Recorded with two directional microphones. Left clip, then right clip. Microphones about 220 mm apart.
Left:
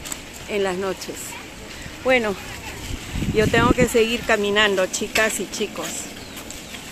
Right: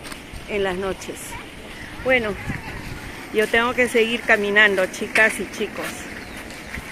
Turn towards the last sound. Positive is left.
turn(degrees=10)  # may be behind; listen again after turning